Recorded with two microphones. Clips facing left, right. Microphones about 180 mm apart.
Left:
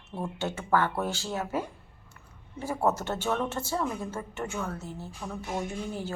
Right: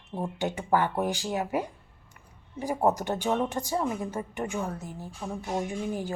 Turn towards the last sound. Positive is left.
turn(degrees=-15)  # may be behind; listen again after turning